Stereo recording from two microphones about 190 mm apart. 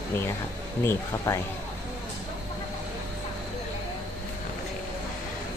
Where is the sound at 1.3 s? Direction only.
15° left (ahead or behind).